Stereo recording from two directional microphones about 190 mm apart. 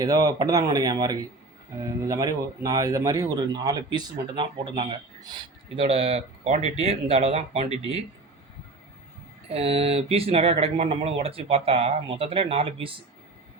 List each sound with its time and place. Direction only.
0.0 s speech: 20° right (ahead or behind)
9.5 s speech: 30° right (ahead or behind)